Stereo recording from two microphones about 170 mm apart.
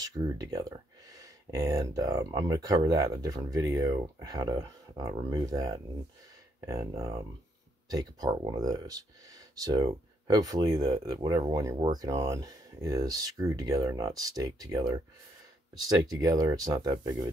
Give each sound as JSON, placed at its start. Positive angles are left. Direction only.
{"t": 0.0, "sound": "speech", "side_deg": -20}